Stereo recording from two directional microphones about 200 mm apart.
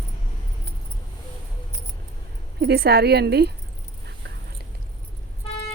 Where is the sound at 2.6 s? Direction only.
50° right (ahead or behind).